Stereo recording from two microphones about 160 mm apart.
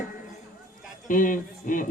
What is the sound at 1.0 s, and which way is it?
Speech, 55° left (ahead or behind).